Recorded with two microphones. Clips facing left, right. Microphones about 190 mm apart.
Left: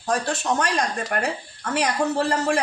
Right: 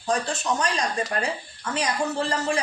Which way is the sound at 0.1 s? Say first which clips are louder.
Left 2 dB; 60° left (ahead or behind).